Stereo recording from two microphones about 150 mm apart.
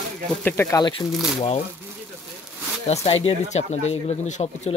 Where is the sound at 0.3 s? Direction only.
10° left (ahead or behind).